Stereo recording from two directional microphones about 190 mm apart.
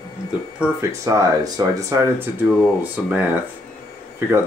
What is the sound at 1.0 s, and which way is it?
Speech, 15° right (ahead or behind).